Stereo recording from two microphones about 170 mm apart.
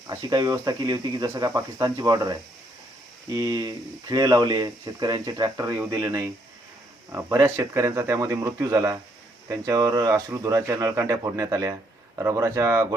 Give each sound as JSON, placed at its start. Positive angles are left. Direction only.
{"t": 0.1, "sound": "speech", "side_deg": -25}